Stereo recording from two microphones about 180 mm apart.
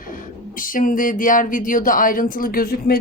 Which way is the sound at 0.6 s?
50° left (ahead or behind).